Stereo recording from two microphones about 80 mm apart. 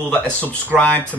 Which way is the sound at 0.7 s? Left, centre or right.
Centre.